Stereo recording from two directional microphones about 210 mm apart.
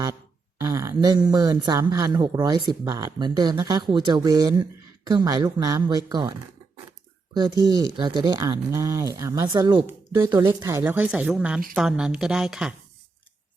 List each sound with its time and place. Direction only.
0.6 s speech: 15° right (ahead or behind)
7.6 s speech: 20° right (ahead or behind)